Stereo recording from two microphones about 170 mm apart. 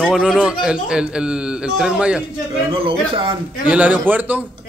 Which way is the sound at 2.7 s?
30° right (ahead or behind).